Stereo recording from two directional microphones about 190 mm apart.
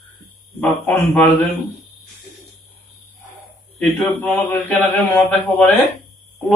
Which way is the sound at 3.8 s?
10° left (ahead or behind).